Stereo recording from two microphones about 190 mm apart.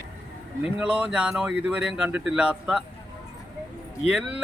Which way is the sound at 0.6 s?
5° right (ahead or behind).